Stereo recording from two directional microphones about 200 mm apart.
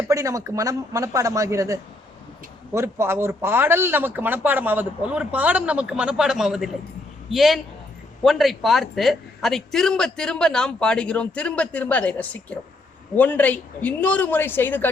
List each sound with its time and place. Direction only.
0.1 s a man's voice: 15° right (ahead or behind); by 14.8 s 10° left (ahead or behind)